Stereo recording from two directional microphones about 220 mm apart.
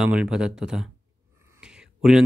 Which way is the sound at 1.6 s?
5° right (ahead or behind).